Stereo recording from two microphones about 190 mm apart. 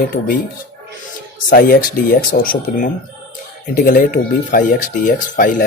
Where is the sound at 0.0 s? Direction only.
50° left (ahead or behind).